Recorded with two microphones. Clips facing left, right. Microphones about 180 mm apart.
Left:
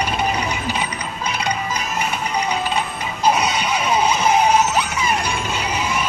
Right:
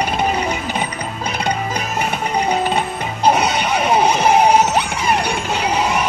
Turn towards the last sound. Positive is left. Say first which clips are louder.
# right 5 dB
turn(degrees=-75)  # may be behind; listen again after turning